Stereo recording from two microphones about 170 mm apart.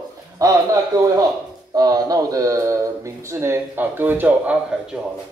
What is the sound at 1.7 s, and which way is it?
Speech, 20° right (ahead or behind).